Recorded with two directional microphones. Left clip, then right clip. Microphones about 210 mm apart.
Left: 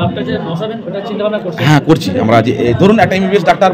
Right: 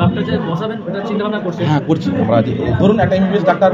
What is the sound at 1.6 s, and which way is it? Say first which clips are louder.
A man's voice: left 8 dB; 55° left (ahead or behind).